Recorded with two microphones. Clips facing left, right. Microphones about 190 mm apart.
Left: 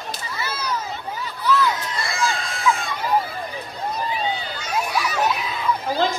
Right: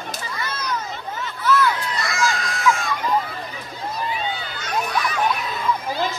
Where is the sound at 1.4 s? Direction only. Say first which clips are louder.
Right 1 dB; 25° left (ahead or behind).